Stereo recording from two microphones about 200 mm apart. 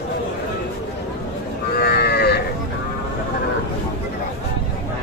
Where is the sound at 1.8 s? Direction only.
50° left (ahead or behind).